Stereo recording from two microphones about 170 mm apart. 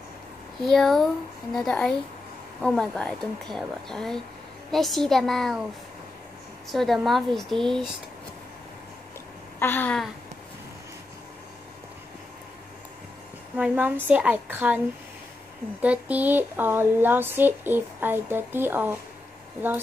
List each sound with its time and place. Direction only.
0.6 s speech: centre (ahead or behind)
6.7 s speech: centre (ahead or behind)
9.6 s a sound: 10° left (ahead or behind)
13.6 s speech: 10° right (ahead or behind)
15.8 s speech: 10° right (ahead or behind)